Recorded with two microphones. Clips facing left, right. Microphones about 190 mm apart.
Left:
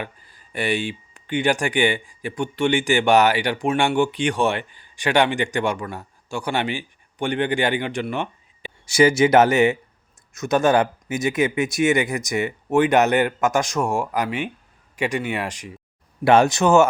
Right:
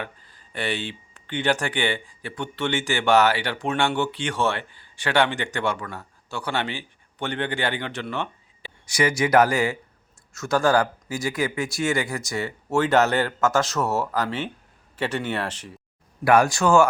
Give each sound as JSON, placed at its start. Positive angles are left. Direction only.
{"t": 0.0, "sound": "speech", "side_deg": 10}
{"t": 8.9, "sound": "speech", "side_deg": 25}
{"t": 16.2, "sound": "speech", "side_deg": 25}